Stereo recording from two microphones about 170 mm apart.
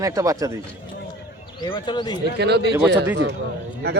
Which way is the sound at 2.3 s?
80° right.